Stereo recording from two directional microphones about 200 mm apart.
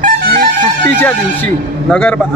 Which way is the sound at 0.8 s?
10° left (ahead or behind).